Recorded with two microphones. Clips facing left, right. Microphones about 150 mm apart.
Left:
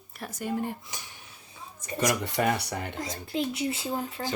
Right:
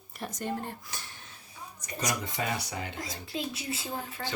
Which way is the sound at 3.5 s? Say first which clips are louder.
Left 6 dB; 25° left (ahead or behind).